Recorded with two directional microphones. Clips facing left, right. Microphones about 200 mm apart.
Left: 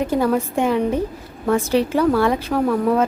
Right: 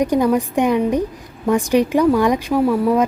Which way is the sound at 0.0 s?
15° right (ahead or behind).